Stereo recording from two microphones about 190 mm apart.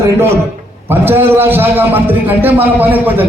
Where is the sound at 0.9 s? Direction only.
10° right (ahead or behind).